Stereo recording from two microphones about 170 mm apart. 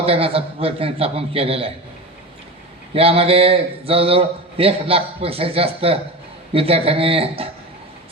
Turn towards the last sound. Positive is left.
turn(degrees=-35)  # may be behind; listen again after turning